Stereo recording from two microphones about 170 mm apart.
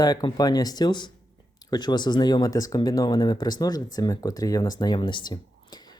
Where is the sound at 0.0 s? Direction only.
20° left (ahead or behind).